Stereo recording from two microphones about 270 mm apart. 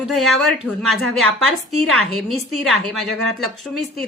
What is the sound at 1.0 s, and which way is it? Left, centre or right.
A woman's voice, right.